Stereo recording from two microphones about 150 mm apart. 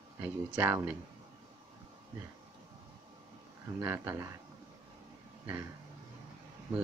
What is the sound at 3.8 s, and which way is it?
Speech, 15° right (ahead or behind).